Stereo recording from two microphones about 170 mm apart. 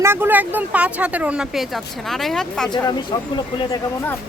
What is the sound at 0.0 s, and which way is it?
Speech, 15° right (ahead or behind).